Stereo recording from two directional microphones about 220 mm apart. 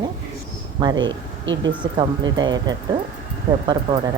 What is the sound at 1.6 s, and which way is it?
Speech, 20° right (ahead or behind).